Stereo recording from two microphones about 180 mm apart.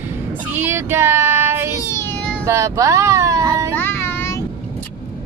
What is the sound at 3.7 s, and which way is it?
Child singing, 15° left (ahead or behind).